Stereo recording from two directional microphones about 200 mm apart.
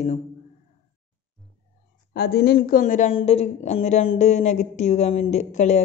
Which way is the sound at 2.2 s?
55° left (ahead or behind).